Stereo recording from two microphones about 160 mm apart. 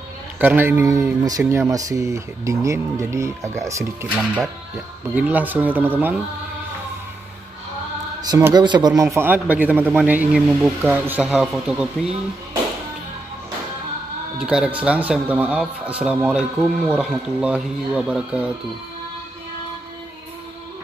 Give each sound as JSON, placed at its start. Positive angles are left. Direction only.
{"t": 0.4, "sound": "speech", "side_deg": -10}
{"t": 4.1, "sound": "speech", "side_deg": -5}
{"t": 8.2, "sound": "speech", "side_deg": -20}
{"t": 14.4, "sound": "speech", "side_deg": -5}